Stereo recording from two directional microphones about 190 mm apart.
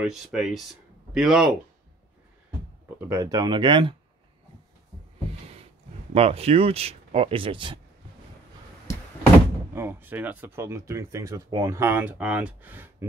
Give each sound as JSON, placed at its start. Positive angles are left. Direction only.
{"t": 0.0, "sound": "speech", "side_deg": 0}
{"t": 3.1, "sound": "speech", "side_deg": -20}
{"t": 6.1, "sound": "speech", "side_deg": -30}
{"t": 9.8, "sound": "speech", "side_deg": -10}